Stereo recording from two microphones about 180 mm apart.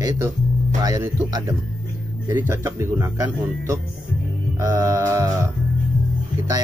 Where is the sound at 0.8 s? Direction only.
20° right (ahead or behind).